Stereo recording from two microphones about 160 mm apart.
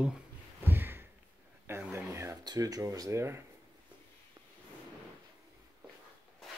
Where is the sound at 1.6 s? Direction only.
15° right (ahead or behind).